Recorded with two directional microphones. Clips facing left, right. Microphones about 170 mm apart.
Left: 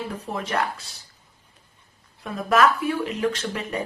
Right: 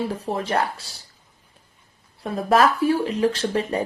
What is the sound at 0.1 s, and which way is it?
Speech, 35° right (ahead or behind).